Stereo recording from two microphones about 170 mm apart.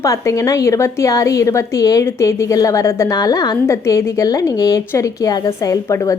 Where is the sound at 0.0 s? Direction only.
20° left (ahead or behind).